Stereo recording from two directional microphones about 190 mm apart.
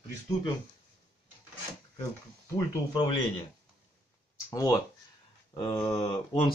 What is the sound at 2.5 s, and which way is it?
Speech, 25° left (ahead or behind).